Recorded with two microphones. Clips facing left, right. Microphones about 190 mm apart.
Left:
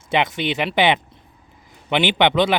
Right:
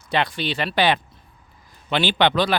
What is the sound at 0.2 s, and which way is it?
Speech, 20° left (ahead or behind).